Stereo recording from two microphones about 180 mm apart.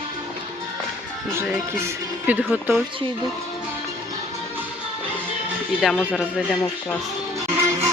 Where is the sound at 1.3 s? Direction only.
15° right (ahead or behind).